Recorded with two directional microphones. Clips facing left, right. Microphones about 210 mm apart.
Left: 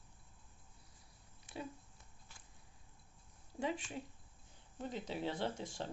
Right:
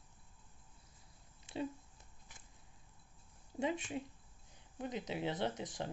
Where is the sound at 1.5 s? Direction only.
25° right (ahead or behind).